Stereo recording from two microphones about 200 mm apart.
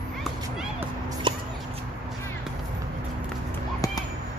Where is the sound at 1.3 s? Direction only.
25° right (ahead or behind).